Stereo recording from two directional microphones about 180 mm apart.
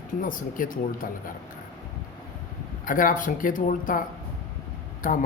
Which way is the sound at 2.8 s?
50° left (ahead or behind).